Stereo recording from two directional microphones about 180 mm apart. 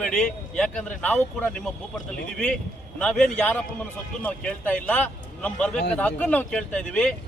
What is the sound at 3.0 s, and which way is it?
Speech, 5° left (ahead or behind).